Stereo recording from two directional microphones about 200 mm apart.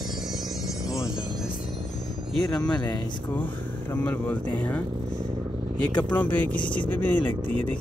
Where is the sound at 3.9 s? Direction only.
10° left (ahead or behind).